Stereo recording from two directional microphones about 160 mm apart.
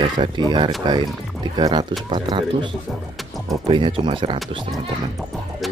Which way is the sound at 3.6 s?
35° right (ahead or behind).